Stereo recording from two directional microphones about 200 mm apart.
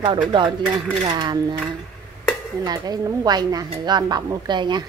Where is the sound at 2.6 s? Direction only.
20° right (ahead or behind).